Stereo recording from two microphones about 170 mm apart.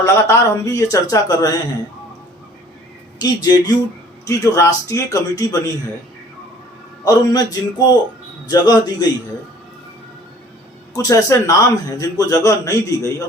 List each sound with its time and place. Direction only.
0.0 s a man's voice: 15° left (ahead or behind)
3.2 s a man's voice: 25° left (ahead or behind)
7.0 s a man's voice: 20° left (ahead or behind)
10.9 s a man's voice: 20° left (ahead or behind)